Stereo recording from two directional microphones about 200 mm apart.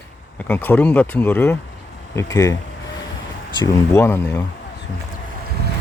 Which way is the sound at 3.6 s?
15° left (ahead or behind).